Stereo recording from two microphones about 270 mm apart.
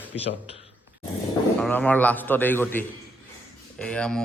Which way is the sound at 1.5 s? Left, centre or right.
Centre.